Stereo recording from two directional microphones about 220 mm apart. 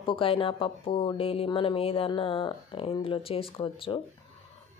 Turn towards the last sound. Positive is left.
turn(degrees=25)  # may be behind; listen again after turning